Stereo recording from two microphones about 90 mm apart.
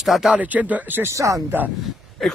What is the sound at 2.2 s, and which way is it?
Speech, 5° left (ahead or behind).